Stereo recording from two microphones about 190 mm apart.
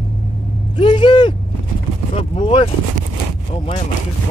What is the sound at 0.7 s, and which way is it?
Speech, 25° left (ahead or behind).